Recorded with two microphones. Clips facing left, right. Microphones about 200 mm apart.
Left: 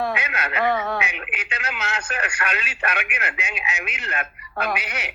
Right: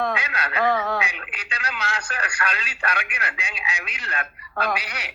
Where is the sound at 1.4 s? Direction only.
25° left (ahead or behind).